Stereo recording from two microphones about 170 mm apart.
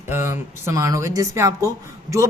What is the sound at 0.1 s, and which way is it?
A woman's voice, 15° right (ahead or behind).